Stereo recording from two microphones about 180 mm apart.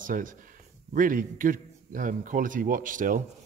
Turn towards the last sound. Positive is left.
turn(degrees=-50)  # may be behind; listen again after turning